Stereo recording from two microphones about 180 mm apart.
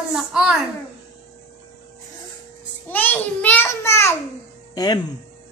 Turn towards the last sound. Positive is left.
turn(degrees=20)  # may be behind; listen again after turning